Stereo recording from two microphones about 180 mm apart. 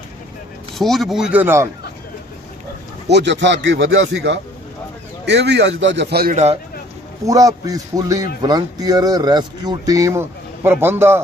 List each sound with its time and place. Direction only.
0.8 s speech: centre (ahead or behind)
3.1 s a man's voice: 75° right (ahead or behind)
6.3 s speech: 40° right (ahead or behind)
7.3 s speech: 20° right (ahead or behind)